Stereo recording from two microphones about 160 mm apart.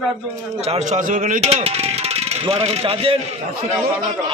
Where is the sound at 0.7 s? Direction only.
45° right (ahead or behind).